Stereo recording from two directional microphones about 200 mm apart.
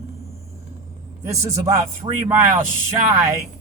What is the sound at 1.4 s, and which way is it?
Speech, 15° right (ahead or behind).